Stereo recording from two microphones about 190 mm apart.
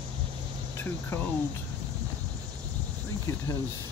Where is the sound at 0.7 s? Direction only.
10° left (ahead or behind).